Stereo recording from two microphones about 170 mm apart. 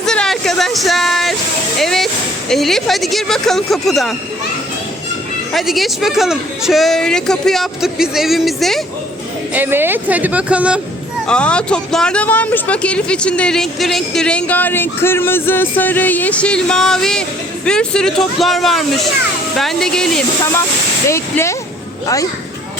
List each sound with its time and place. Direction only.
0.0 s a sound: 5° left (ahead or behind)
1.8 s music: centre (ahead or behind)
2.5 s speech: centre (ahead or behind)
5.5 s speech: centre (ahead or behind)
9.6 s speech: 10° right (ahead or behind)
11.3 s speech: 5° left (ahead or behind)
21.1 s speech: 15° left (ahead or behind)